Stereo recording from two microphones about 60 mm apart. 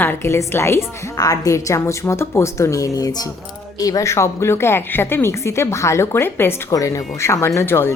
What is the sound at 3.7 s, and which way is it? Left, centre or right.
Speech, left.